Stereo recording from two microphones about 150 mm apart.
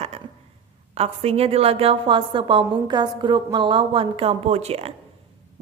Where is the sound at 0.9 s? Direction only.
45° right (ahead or behind).